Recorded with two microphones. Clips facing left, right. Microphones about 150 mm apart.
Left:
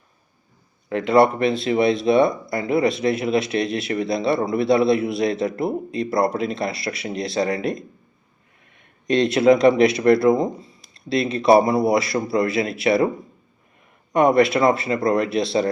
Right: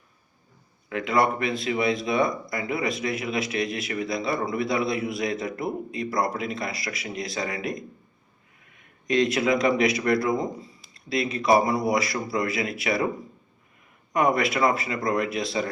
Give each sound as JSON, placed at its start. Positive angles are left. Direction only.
{"t": 0.9, "sound": "speech", "side_deg": 30}
{"t": 9.0, "sound": "speech", "side_deg": 30}
{"t": 14.1, "sound": "speech", "side_deg": 30}